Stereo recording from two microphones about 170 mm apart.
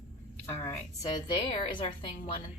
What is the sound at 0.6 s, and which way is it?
A woman's voice, 20° left (ahead or behind).